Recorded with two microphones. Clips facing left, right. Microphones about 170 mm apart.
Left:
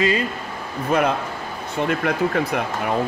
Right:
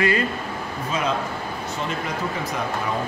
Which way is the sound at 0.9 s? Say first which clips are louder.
Left 5 dB; 60° left (ahead or behind).